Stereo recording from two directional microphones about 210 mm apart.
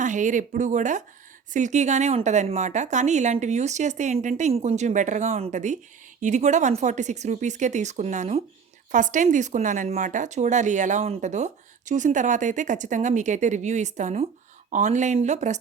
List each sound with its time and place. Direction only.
0.0 s a woman's voice: 35° right (ahead or behind)